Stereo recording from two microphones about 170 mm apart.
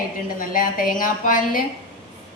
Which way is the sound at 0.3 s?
55° left (ahead or behind).